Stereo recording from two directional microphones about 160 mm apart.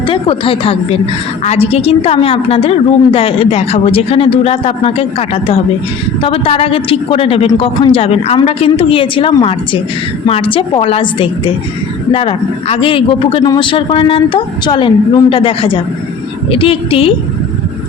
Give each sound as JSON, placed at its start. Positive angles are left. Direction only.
{"t": 0.1, "sound": "a woman's voice", "side_deg": 35}